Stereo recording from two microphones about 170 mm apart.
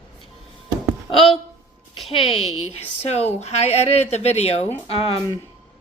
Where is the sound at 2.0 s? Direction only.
30° left (ahead or behind).